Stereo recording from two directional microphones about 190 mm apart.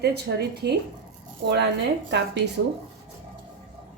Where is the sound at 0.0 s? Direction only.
60° right (ahead or behind).